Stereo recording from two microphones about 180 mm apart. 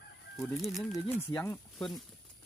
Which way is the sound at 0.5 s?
Centre (ahead or behind).